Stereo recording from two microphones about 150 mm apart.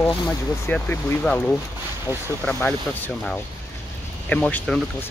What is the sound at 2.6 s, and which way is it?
Speech, 10° left (ahead or behind).